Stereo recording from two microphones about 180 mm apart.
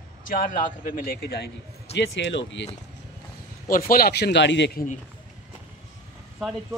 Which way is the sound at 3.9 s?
60° left (ahead or behind).